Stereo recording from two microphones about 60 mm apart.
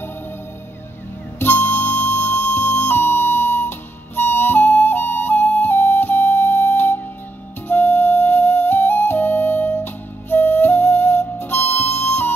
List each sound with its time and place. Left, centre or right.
1.4 s music: left
7.6 s flute: left